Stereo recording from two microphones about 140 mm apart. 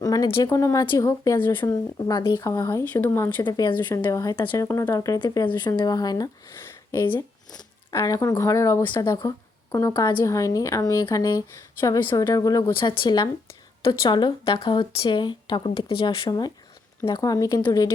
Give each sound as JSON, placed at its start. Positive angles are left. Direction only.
{"t": 0.0, "sound": "a sound", "side_deg": 25}
{"t": 0.4, "sound": "a woman's voice", "side_deg": 25}
{"t": 2.0, "sound": "a woman's voice", "side_deg": 35}
{"t": 3.4, "sound": "speech", "side_deg": 35}
{"t": 3.8, "sound": "a woman's voice", "side_deg": 15}
{"t": 4.0, "sound": "speech", "side_deg": 25}
{"t": 7.9, "sound": "speech", "side_deg": 25}